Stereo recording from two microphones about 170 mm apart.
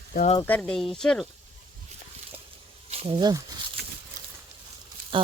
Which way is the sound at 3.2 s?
25° right (ahead or behind).